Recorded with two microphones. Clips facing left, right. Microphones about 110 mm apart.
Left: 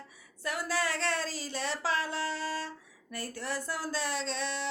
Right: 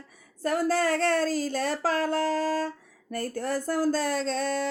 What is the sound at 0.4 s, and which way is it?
Speech, 45° right (ahead or behind).